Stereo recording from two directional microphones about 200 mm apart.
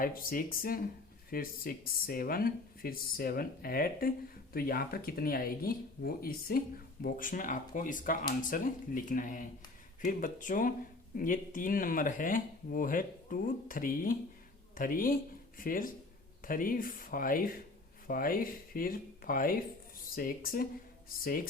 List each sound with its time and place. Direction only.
0.0 s speech: 45° left (ahead or behind)